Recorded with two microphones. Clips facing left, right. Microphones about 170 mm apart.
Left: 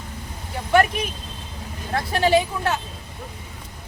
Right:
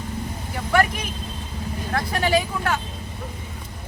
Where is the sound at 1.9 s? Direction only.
25° left (ahead or behind).